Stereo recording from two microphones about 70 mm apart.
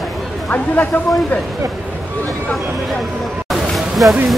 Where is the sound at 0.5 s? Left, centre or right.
Left.